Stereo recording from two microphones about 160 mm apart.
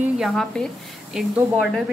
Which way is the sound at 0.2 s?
Centre (ahead or behind).